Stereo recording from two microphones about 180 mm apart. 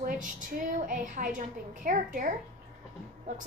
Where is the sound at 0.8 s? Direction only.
45° right (ahead or behind).